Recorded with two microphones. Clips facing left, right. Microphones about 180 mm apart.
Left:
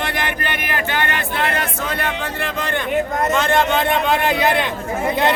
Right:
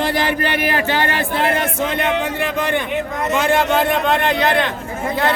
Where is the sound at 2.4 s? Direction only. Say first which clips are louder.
Right 3 dB; 15° right (ahead or behind); by 4.6 s 10° left (ahead or behind).